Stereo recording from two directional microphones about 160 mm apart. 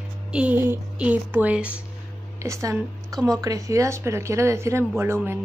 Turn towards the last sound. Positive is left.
turn(degrees=-15)  # may be behind; listen again after turning